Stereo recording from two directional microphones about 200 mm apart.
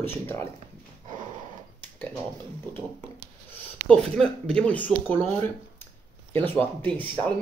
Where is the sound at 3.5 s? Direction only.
10° left (ahead or behind).